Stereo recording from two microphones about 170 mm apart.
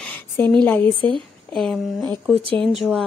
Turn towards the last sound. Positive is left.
turn(degrees=0)  # may be behind; listen again after turning